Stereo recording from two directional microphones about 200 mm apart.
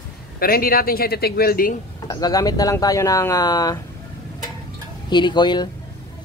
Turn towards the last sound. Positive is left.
turn(degrees=20)  # may be behind; listen again after turning